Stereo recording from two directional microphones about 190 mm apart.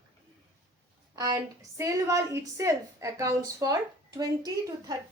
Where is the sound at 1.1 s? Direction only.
15° right (ahead or behind).